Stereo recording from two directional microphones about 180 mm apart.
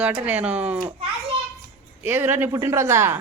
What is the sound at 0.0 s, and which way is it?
Speech, 10° right (ahead or behind).